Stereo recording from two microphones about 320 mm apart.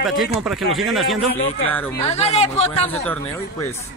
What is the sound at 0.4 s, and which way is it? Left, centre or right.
Speech, centre.